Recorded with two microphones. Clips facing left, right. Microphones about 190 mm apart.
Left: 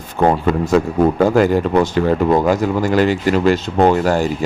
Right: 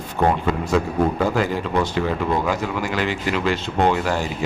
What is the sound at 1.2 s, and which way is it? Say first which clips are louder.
A man's voice: left 8 dB; 45° left (ahead or behind).